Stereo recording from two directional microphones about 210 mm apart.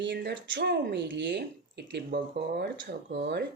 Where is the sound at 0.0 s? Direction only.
55° right (ahead or behind).